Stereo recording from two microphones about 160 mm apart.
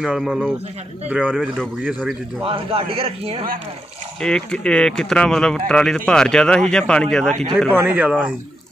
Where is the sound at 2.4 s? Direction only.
35° right (ahead or behind).